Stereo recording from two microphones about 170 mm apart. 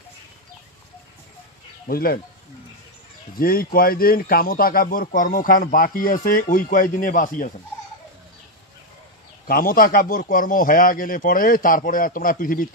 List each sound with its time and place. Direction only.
1.9 s speech: 60° left (ahead or behind)
3.3 s speech: 60° left (ahead or behind)
9.5 s speech: 60° left (ahead or behind)